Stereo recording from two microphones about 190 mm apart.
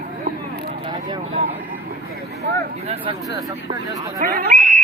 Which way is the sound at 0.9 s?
20° right (ahead or behind).